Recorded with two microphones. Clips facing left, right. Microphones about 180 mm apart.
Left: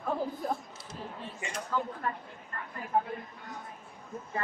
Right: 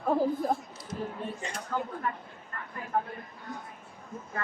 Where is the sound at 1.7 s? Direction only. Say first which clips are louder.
Even; 55° right (ahead or behind).